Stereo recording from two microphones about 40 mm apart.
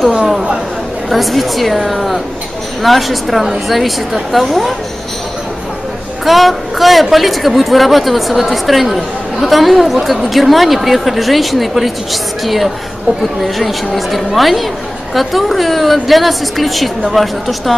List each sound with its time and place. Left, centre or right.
0.1 s chatter: centre
1.1 s a woman's voice: centre
6.2 s a woman's voice: centre